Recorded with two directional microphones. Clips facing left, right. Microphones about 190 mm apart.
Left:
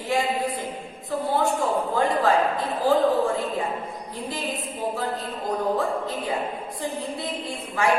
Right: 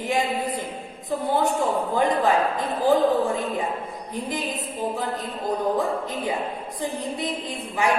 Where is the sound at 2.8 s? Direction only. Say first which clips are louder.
Right 1 dB; 20° right (ahead or behind).